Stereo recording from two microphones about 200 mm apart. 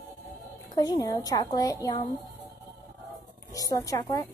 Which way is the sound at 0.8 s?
20° left (ahead or behind).